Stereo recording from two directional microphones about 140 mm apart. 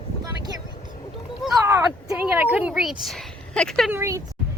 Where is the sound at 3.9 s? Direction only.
20° right (ahead or behind).